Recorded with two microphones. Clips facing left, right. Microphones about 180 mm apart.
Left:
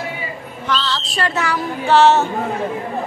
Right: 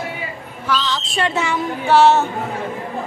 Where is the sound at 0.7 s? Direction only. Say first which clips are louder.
Right 1 dB; 15° right (ahead or behind).